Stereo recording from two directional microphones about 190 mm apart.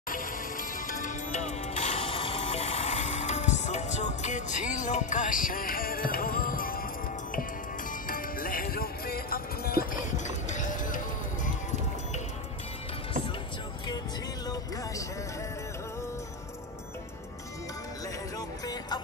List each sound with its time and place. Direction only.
0.1 s music: 45° left (ahead or behind)
8.1 s music: 50° left (ahead or behind)